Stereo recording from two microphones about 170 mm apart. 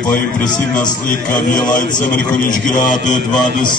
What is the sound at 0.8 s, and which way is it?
A man's voice, 50° left (ahead or behind).